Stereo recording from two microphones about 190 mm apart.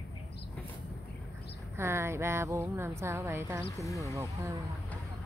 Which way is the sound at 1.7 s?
15° right (ahead or behind).